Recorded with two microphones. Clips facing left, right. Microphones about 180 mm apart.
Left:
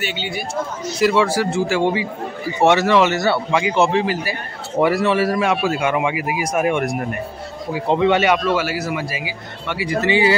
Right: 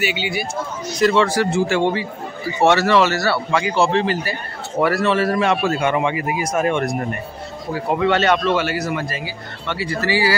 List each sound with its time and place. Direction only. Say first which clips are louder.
0.0 s speech: right 3 dB; 10° right (ahead or behind)
0.9 s a man's voice: even; 10° left (ahead or behind)